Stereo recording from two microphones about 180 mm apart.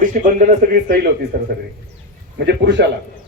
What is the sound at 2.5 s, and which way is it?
Speech, 75° right (ahead or behind).